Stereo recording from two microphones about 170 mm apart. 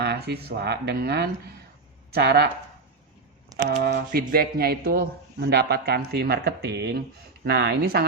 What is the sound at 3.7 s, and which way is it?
Speech, 65° right (ahead or behind).